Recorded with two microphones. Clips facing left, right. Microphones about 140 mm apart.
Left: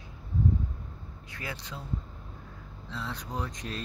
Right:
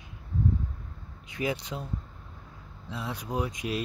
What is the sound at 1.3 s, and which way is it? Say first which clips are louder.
Speech: right 9 dB; 15° right (ahead or behind).